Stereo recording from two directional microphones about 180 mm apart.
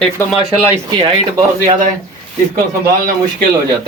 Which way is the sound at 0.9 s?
25° right (ahead or behind).